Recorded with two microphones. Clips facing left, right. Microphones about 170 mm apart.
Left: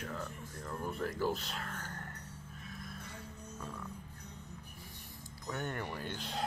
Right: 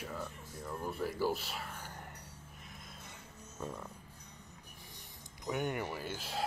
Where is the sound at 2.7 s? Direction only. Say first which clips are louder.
Left 8 dB; 20° right (ahead or behind).